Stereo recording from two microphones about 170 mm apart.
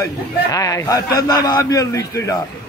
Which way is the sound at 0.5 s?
20° left (ahead or behind).